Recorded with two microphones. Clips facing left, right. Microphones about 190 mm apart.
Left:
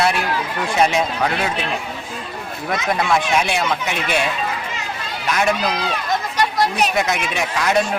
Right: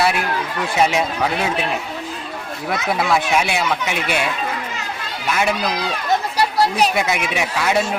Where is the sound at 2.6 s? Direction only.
5° right (ahead or behind).